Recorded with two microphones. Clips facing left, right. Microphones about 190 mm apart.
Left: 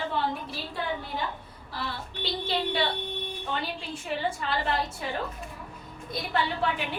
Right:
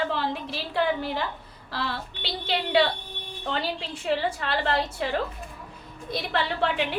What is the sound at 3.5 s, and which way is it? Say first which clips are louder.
A woman's voice: right 5 dB; 90° right.